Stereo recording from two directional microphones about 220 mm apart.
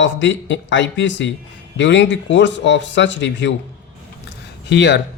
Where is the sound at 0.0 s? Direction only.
55° left (ahead or behind).